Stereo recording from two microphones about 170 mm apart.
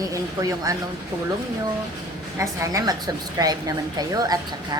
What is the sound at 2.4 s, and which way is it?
A woman's voice, 20° right (ahead or behind).